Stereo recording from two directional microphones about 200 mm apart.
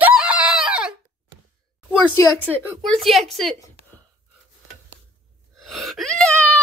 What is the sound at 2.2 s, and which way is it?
Speech, 15° left (ahead or behind).